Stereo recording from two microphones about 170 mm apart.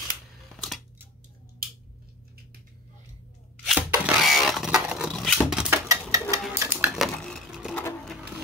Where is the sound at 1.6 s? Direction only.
60° right (ahead or behind).